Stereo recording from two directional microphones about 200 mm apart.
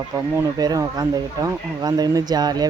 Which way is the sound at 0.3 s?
15° right (ahead or behind).